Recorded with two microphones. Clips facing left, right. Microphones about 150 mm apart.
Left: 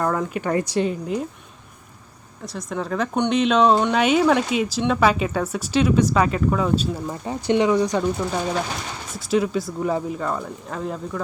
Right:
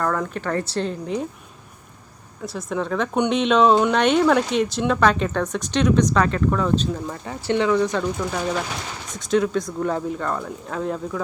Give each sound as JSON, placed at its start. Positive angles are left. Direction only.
{"t": 0.0, "sound": "speech", "side_deg": 10}
{"t": 2.4, "sound": "a woman's voice", "side_deg": 0}